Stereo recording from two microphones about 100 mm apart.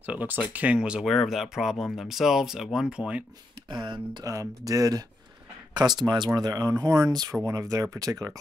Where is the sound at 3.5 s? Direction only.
50° right (ahead or behind).